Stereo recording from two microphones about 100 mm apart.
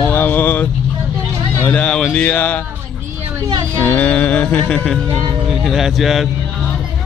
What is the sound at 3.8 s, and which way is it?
Music, 15° left (ahead or behind).